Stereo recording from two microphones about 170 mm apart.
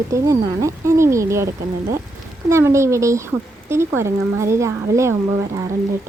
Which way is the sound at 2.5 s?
15° right (ahead or behind).